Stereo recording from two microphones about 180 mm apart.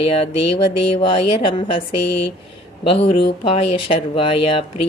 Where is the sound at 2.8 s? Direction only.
30° left (ahead or behind).